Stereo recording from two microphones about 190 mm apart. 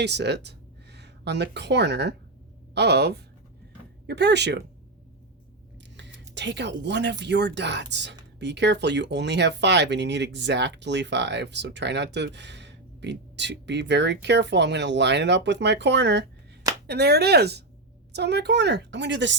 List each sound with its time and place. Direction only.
0.0 s speech: 65° right (ahead or behind)
6.0 s speech: 65° right (ahead or behind)